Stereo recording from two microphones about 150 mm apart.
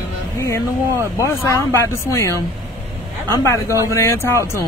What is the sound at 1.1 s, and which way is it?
Speech, 20° left (ahead or behind).